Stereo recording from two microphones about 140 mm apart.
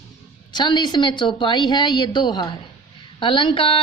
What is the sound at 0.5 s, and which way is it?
A woman's voice, 30° left (ahead or behind).